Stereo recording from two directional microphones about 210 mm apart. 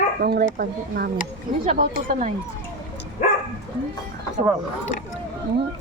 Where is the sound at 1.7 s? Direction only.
35° right (ahead or behind).